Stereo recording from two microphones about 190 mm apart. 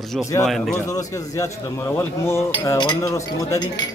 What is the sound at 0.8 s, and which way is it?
Speech, 15° left (ahead or behind).